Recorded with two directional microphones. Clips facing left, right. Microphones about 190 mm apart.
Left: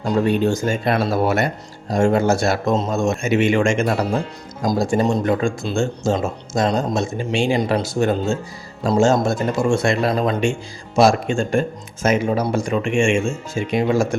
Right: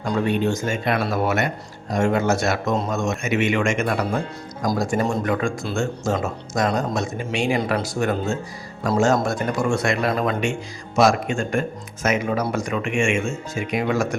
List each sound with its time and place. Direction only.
0.1 s speech: 35° left (ahead or behind)